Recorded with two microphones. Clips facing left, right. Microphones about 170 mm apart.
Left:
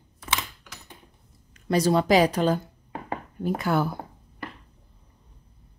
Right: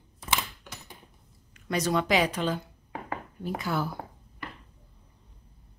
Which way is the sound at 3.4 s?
55° left (ahead or behind).